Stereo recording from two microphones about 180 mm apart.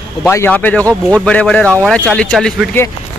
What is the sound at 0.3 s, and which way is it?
Speech, 10° left (ahead or behind).